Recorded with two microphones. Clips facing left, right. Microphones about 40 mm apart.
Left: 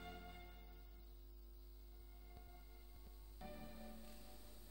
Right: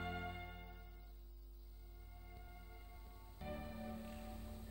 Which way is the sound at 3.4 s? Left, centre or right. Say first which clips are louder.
Right 7 dB; right.